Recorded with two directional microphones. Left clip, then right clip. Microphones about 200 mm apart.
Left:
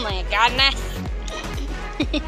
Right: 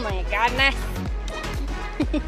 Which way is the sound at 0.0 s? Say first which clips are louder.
Left 4 dB; 5° right (ahead or behind).